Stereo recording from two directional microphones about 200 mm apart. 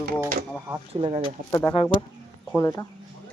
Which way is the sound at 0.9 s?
30° right (ahead or behind).